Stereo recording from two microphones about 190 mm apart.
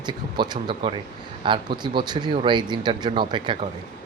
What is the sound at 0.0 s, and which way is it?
Speech, 25° right (ahead or behind).